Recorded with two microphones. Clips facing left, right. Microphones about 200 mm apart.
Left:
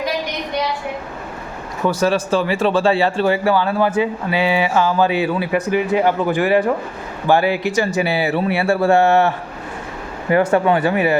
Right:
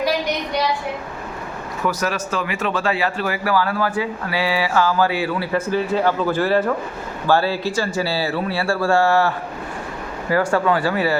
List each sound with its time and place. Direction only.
1.9 s speech: 30° left (ahead or behind)